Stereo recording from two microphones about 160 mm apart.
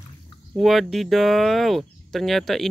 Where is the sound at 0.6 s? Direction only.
Centre (ahead or behind).